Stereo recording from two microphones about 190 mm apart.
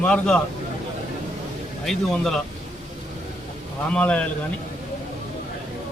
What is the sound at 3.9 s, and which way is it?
Speech, 5° left (ahead or behind).